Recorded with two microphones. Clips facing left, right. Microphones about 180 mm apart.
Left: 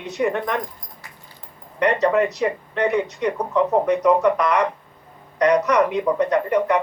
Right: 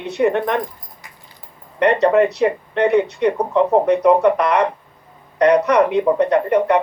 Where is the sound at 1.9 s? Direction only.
30° right (ahead or behind).